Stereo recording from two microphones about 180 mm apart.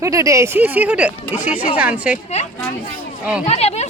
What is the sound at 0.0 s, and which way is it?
Speech, 15° right (ahead or behind).